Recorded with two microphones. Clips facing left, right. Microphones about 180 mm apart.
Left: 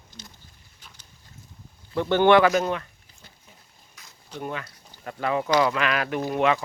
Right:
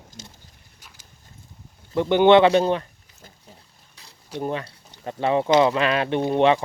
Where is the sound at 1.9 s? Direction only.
20° right (ahead or behind).